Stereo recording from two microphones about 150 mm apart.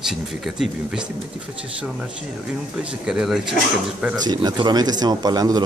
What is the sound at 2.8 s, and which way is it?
Speech, 5° right (ahead or behind).